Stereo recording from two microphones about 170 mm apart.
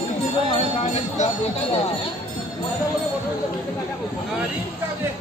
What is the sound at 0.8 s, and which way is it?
Music, 40° left (ahead or behind).